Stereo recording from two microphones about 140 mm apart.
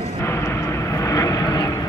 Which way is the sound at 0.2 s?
20° left (ahead or behind).